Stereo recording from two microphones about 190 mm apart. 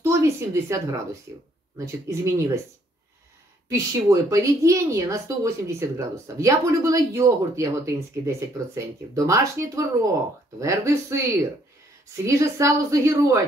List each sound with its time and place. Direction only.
0.0 s a sound: 15° right (ahead or behind)
1.9 s a woman's voice: 15° right (ahead or behind)
3.6 s a woman's voice: 15° right (ahead or behind)
12.3 s a woman's voice: 15° right (ahead or behind)